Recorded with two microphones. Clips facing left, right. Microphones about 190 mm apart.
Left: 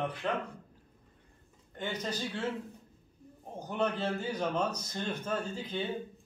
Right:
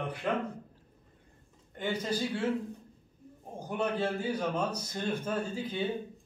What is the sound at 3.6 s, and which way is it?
A man's voice, 10° right (ahead or behind).